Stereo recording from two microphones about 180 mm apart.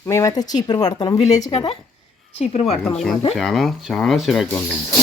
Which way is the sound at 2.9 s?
Centre (ahead or behind).